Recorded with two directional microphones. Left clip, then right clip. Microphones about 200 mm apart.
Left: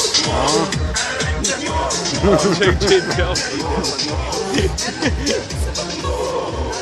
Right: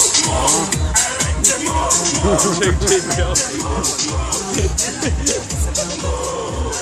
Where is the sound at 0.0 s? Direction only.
45° right (ahead or behind).